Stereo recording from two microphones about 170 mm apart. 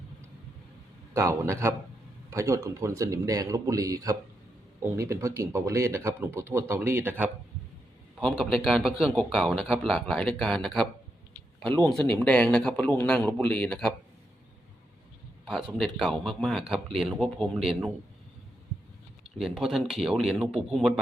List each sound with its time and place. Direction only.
1.1 s speech: 15° right (ahead or behind)
8.2 s a man's voice: centre (ahead or behind)
15.8 s speech: centre (ahead or behind)
19.4 s speech: centre (ahead or behind)